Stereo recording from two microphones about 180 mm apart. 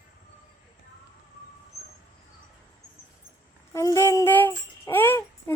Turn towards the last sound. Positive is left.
turn(degrees=10)  # may be behind; listen again after turning